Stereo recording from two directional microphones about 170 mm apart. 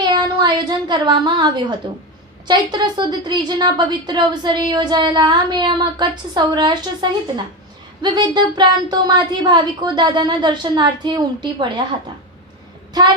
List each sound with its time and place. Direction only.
0.0 s a woman's voice: 25° right (ahead or behind)